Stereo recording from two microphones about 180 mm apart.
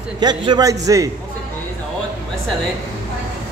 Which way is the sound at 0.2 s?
25° right (ahead or behind).